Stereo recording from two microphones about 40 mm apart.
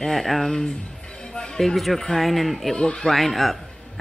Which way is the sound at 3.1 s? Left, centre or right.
Centre.